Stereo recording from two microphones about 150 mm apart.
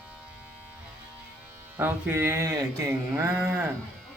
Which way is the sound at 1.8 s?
15° right (ahead or behind).